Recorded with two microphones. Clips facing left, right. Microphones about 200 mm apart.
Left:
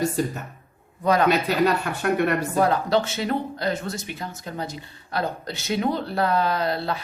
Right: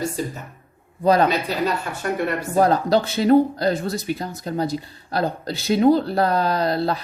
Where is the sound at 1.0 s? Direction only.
35° right (ahead or behind).